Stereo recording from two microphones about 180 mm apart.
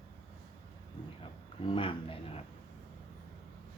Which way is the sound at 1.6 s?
30° left (ahead or behind).